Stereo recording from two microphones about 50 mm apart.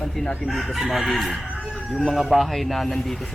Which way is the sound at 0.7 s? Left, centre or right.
Centre.